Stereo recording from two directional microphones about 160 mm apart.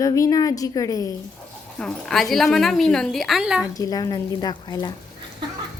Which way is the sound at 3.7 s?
25° left (ahead or behind).